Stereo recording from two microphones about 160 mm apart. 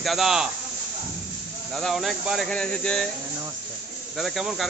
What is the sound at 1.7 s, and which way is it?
Speech, centre (ahead or behind).